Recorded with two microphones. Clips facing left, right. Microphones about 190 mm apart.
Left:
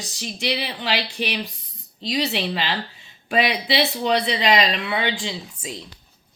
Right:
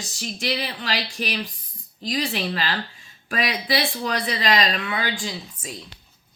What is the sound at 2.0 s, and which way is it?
Speech, 20° left (ahead or behind).